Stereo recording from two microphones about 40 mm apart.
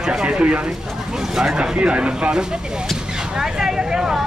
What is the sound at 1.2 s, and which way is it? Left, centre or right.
Speech, centre.